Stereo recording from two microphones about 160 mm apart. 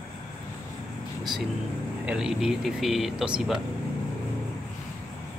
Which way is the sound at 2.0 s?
5° right (ahead or behind).